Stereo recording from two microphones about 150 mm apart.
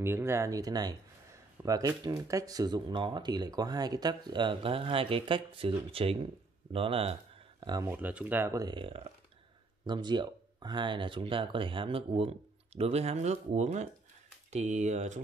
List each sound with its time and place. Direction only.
0.0 s speech: 15° right (ahead or behind); by 7.2 s 40° right (ahead or behind)
7.8 s speech: 10° right (ahead or behind)
8.5 s speech: 30° right (ahead or behind); by 15.1 s 50° right (ahead or behind)